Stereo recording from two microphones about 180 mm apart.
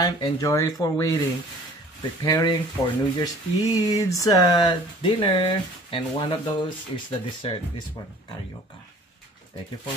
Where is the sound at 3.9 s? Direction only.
20° left (ahead or behind).